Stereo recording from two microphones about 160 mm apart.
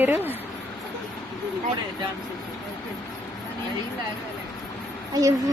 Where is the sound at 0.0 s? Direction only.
10° right (ahead or behind).